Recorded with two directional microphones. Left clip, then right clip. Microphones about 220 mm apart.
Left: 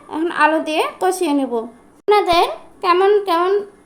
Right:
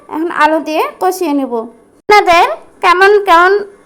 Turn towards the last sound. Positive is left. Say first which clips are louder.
# right 8 dB
turn(degrees=-5)  # may be behind; listen again after turning